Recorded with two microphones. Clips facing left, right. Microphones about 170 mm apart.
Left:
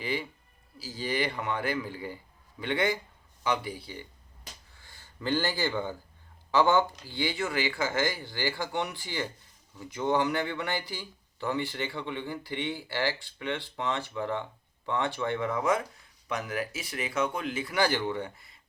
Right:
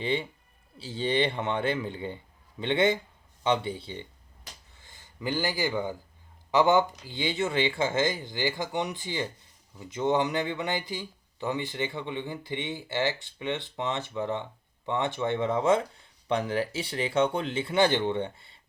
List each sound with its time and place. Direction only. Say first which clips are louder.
0.0 s speech: right 4 dB; 25° right (ahead or behind)